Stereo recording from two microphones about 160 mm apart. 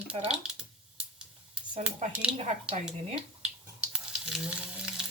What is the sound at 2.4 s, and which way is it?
Speech, 40° right (ahead or behind).